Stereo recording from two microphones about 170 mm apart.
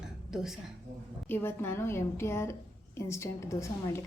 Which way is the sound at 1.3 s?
15° left (ahead or behind).